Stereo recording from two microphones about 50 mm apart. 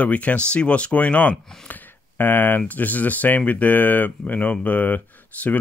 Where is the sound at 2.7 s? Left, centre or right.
Left.